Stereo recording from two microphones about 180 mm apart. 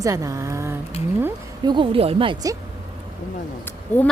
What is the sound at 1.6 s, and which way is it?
Speech, 25° right (ahead or behind).